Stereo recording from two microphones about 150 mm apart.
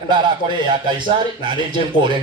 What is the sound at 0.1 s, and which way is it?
A man's voice, 30° right (ahead or behind).